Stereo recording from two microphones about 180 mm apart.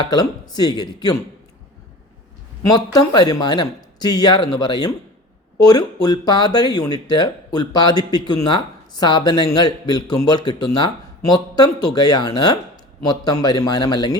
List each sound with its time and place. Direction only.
0.0 s speech: 20° left (ahead or behind)
2.6 s speech: 20° left (ahead or behind)